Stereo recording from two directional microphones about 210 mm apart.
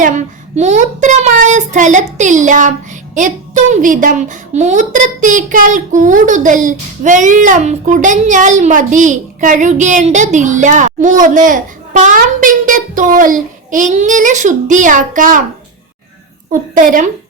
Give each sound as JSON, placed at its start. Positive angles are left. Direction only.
{"t": 0.0, "sound": "a child's voice", "side_deg": -35}
{"t": 16.5, "sound": "a child's voice", "side_deg": -40}